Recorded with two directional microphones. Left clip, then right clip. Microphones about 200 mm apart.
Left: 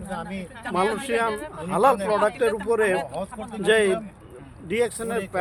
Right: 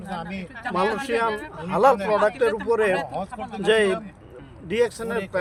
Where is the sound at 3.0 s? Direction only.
35° right (ahead or behind).